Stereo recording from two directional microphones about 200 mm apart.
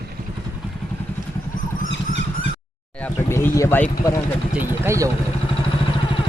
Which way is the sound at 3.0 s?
10° left (ahead or behind).